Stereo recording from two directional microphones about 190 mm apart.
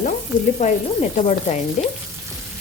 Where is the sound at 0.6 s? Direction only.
40° left (ahead or behind).